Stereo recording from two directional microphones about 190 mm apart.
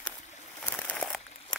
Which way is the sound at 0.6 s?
5° left (ahead or behind).